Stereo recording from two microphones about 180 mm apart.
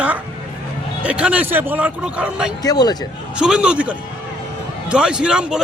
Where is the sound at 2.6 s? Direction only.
20° left (ahead or behind).